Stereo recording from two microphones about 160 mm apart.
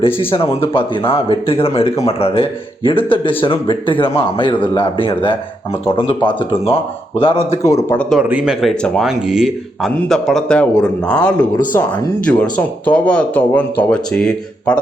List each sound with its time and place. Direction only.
0.0 s speech: 35° left (ahead or behind)
8.1 s speech: 10° right (ahead or behind)